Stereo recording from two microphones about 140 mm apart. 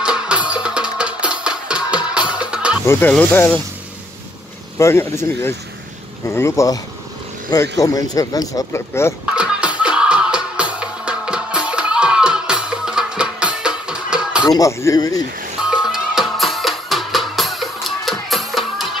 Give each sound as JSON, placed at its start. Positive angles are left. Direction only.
{"t": 0.0, "sound": "music", "side_deg": -5}
{"t": 2.5, "sound": "chicken", "side_deg": -5}
{"t": 2.9, "sound": "speech", "side_deg": 10}
{"t": 4.7, "sound": "speech", "side_deg": 20}
{"t": 9.2, "sound": "music", "side_deg": -10}
{"t": 14.6, "sound": "speech", "side_deg": 20}
{"t": 15.6, "sound": "music", "side_deg": -5}